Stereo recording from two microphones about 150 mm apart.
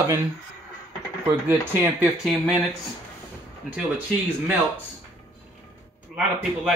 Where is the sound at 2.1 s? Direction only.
5° right (ahead or behind).